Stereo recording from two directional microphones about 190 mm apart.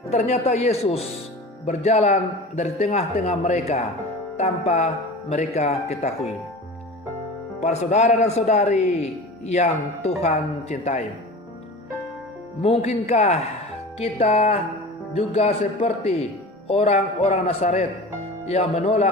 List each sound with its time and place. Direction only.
0.1 s speech: 35° left (ahead or behind)
7.6 s speech: 35° left (ahead or behind)
12.6 s speech: 35° left (ahead or behind)